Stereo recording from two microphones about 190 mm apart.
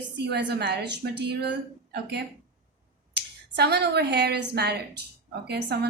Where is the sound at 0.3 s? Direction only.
60° right (ahead or behind).